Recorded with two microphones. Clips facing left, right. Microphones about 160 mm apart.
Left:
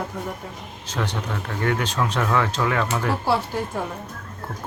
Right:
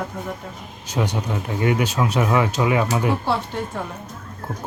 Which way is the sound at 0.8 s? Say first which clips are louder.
Right 4 dB; 10° right (ahead or behind).